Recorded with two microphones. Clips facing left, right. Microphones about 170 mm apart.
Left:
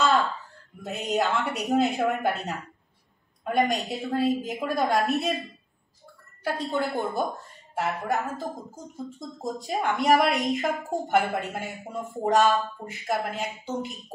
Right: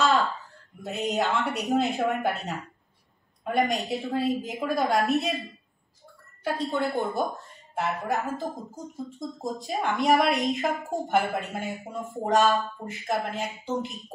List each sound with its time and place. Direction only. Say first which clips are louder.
0.8 s a woman's voice: left 1 dB; centre (ahead or behind)
6.4 s a woman's voice: even; centre (ahead or behind)